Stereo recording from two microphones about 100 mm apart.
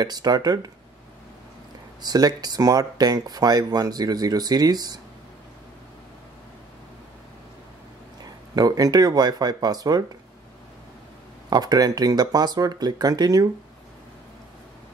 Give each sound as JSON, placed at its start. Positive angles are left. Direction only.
{"t": 0.0, "sound": "speech", "side_deg": -45}
{"t": 2.0, "sound": "speech", "side_deg": -40}
{"t": 8.2, "sound": "speech", "side_deg": -40}
{"t": 11.5, "sound": "speech", "side_deg": -40}